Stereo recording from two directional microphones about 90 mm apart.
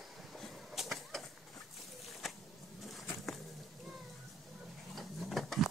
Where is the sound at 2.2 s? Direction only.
Centre (ahead or behind).